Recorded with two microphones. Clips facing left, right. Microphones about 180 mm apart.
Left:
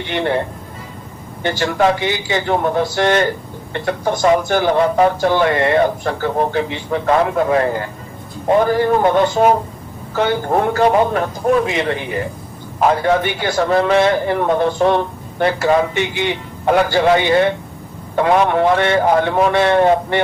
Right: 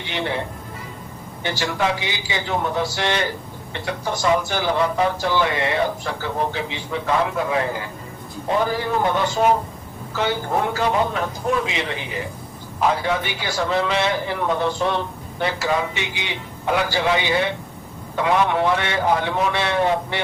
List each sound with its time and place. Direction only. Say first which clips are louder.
0.0 s a man's voice: left 7 dB; 55° left (ahead or behind)